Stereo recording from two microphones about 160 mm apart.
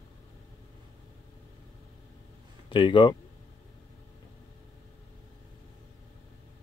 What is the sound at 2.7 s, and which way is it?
Speech, 30° left (ahead or behind).